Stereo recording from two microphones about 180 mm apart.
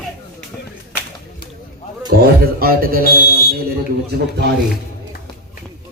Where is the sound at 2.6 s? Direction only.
55° right (ahead or behind).